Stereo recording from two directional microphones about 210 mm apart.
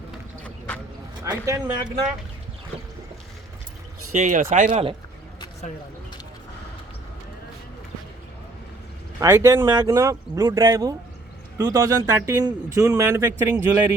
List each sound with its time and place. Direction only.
1.2 s a man's voice: 15° right (ahead or behind)
4.1 s speech: 35° right (ahead or behind)
4.7 s speech: 25° right (ahead or behind)
9.2 s a man's voice: 15° right (ahead or behind)